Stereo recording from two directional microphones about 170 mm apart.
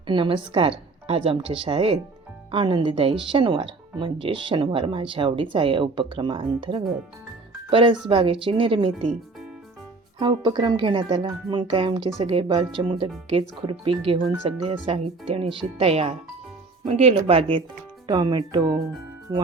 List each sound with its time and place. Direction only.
0.1 s a woman's voice: 30° right (ahead or behind)
10.2 s a woman's voice: 25° right (ahead or behind)